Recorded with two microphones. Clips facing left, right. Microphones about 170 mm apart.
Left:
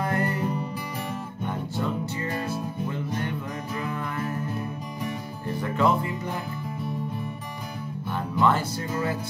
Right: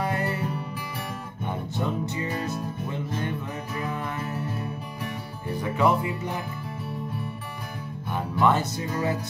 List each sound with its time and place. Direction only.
0.0 s music: 15° right (ahead or behind)
3.7 s music: 20° right (ahead or behind)
5.6 s music: 15° right (ahead or behind)
8.4 s speech: 20° right (ahead or behind)